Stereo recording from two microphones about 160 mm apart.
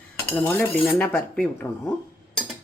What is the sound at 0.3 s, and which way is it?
Speech, 10° left (ahead or behind).